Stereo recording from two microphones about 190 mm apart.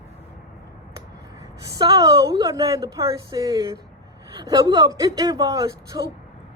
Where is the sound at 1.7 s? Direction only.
20° right (ahead or behind).